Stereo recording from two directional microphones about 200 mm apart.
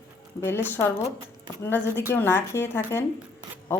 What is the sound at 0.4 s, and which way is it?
Speech, 10° left (ahead or behind).